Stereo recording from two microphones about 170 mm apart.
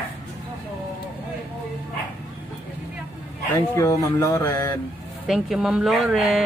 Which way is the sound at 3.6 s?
20° left (ahead or behind).